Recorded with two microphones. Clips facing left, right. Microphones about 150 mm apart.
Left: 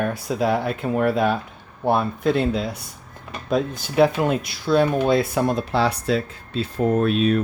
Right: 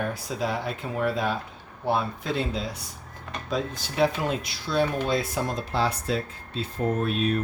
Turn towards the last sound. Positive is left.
turn(degrees=90)